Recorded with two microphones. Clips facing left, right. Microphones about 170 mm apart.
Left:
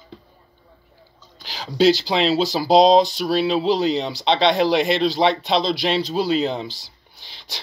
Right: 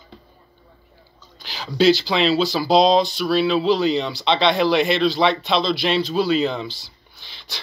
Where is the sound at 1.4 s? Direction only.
40° left (ahead or behind).